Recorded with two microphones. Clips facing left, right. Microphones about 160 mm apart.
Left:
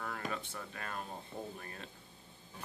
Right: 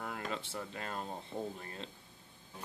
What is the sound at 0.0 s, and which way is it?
Speech, 20° right (ahead or behind).